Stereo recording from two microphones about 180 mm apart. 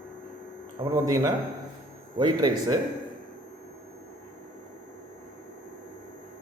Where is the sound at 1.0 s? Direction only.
20° right (ahead or behind).